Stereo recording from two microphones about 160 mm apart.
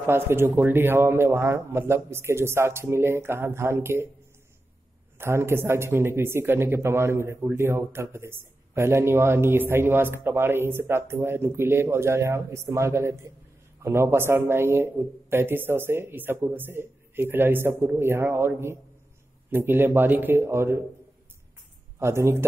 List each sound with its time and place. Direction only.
0.0 s speech: 15° right (ahead or behind)
5.1 s speech: 15° right (ahead or behind)
21.9 s speech: 15° right (ahead or behind)